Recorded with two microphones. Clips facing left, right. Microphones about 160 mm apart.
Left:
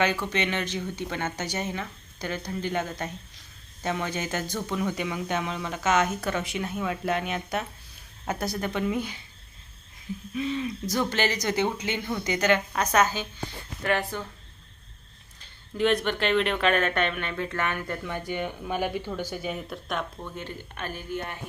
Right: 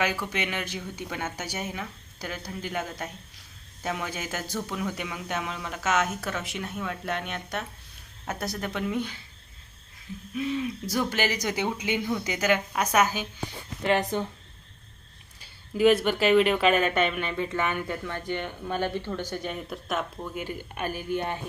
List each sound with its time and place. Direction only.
0.0 s speech: 5° right (ahead or behind)
10.3 s speech: 5° right (ahead or behind); by 14.3 s 20° right (ahead or behind)
15.4 s speech: 5° right (ahead or behind)
18.0 s speech: 10° left (ahead or behind); by 21.3 s 20° right (ahead or behind)